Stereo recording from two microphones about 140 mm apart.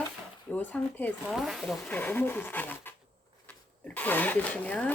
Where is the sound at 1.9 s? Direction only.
10° left (ahead or behind).